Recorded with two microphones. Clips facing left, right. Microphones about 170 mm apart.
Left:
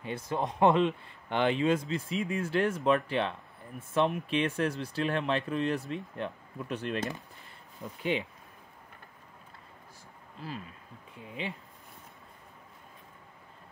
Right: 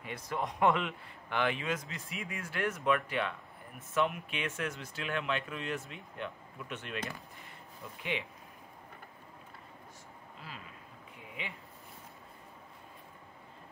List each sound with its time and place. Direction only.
0.0 s speech: 25° left (ahead or behind)